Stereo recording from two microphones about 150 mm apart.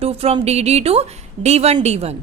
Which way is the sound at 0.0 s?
40° right (ahead or behind).